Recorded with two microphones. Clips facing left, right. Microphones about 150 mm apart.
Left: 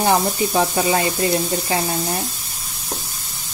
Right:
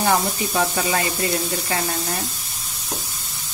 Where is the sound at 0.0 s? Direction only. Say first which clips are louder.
Left 3 dB; 25° left (ahead or behind).